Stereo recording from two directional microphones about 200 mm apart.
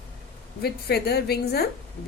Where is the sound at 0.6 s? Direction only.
55° left (ahead or behind).